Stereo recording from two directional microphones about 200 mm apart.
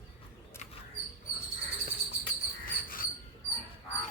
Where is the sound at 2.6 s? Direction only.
45° left (ahead or behind).